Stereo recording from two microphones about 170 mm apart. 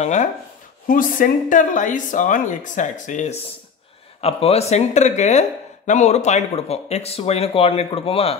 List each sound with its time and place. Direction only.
0.0 s speech: 45° left (ahead or behind)
0.8 s speech: 55° left (ahead or behind); by 8.4 s 35° left (ahead or behind)